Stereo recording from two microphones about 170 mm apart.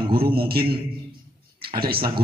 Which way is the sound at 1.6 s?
60° right (ahead or behind).